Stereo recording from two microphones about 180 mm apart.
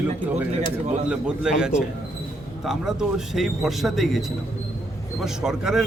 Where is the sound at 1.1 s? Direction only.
5° right (ahead or behind).